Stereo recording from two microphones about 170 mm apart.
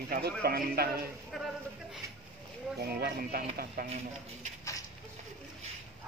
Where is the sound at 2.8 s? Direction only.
65° right (ahead or behind).